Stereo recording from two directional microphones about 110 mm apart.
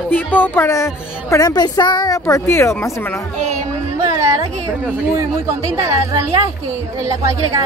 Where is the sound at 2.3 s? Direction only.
25° left (ahead or behind).